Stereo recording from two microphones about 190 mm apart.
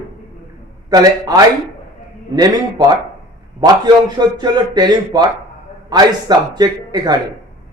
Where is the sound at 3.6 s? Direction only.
20° right (ahead or behind).